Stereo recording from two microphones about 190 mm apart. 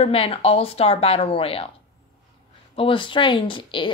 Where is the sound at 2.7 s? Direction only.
25° left (ahead or behind).